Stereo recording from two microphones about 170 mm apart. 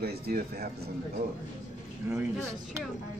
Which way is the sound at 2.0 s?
15° right (ahead or behind).